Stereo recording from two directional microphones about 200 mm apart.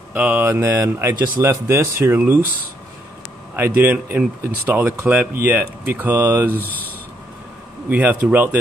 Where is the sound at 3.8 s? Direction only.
10° right (ahead or behind).